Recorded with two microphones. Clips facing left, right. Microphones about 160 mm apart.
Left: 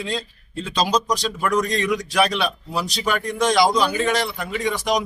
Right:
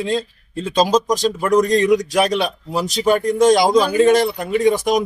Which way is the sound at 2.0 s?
45° right (ahead or behind).